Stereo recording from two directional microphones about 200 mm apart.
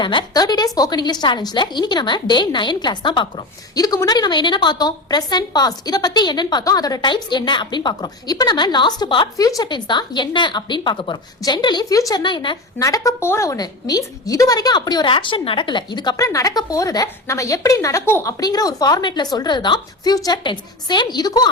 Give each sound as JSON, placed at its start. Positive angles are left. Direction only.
{"t": 0.0, "sound": "a woman's voice", "side_deg": 25}